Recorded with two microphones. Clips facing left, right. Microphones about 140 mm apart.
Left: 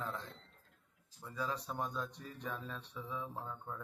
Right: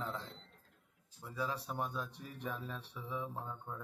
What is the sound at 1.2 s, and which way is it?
A man's voice, 10° right (ahead or behind).